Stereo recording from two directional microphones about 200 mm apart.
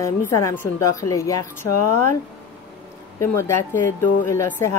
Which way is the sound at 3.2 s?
15° left (ahead or behind).